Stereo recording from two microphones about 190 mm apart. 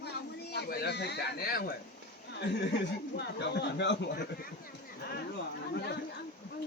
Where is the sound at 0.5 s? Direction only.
60° left (ahead or behind).